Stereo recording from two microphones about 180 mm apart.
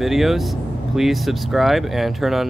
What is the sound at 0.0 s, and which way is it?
Speech, centre (ahead or behind).